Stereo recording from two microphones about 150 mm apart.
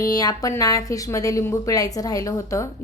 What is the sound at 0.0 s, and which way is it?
Speech, 25° left (ahead or behind).